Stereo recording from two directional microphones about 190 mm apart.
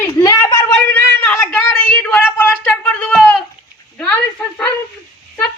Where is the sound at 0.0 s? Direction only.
20° left (ahead or behind).